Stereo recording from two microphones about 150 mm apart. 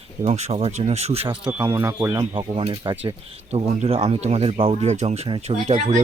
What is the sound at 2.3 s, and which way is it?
Speech, 35° right (ahead or behind).